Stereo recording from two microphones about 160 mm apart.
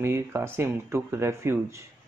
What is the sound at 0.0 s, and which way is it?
Speech, 15° right (ahead or behind).